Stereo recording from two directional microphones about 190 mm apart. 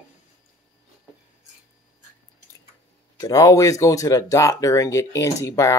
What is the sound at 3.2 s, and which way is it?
Speech, 20° left (ahead or behind).